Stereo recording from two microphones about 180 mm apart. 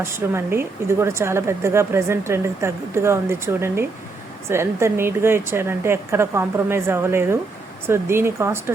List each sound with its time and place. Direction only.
0.0 s a woman's voice: 15° right (ahead or behind)